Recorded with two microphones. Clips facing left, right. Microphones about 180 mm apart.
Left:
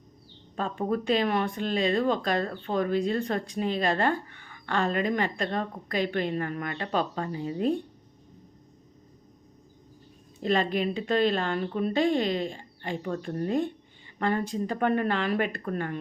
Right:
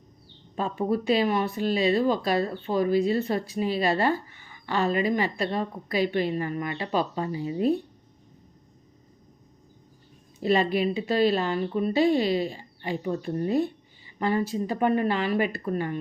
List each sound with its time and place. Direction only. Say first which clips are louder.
0.5 s speech: right 2 dB; 10° right (ahead or behind)
10.4 s speech: right 3 dB; 10° right (ahead or behind)